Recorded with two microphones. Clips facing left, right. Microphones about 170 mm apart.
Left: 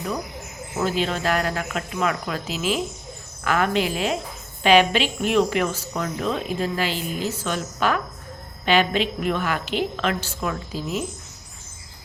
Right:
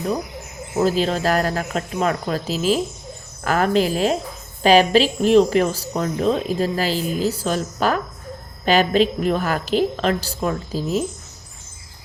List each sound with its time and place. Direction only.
0.8 s speech: 35° right (ahead or behind)